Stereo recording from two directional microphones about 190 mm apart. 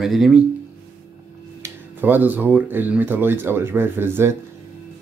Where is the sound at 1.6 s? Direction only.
10° right (ahead or behind).